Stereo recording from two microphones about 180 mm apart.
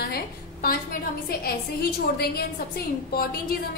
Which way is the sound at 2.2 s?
60° left (ahead or behind).